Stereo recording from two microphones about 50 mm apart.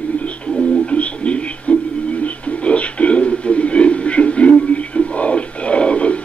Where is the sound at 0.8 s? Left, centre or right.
Left.